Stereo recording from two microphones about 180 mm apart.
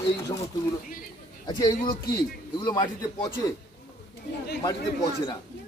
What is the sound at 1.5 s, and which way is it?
Speech, 25° left (ahead or behind).